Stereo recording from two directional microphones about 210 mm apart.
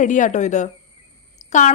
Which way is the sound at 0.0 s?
35° left (ahead or behind).